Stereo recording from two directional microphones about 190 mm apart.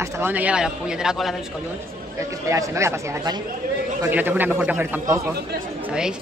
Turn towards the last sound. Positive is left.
turn(degrees=-5)  # may be behind; listen again after turning